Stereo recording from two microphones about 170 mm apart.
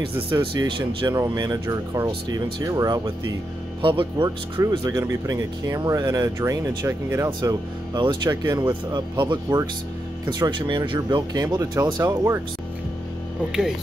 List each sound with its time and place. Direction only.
0.0 s speech: 30° right (ahead or behind)
4.6 s speech: 20° right (ahead or behind)
7.2 s speech: 25° right (ahead or behind)